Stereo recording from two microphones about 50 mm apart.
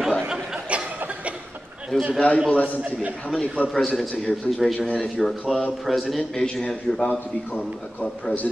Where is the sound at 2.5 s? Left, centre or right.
Left.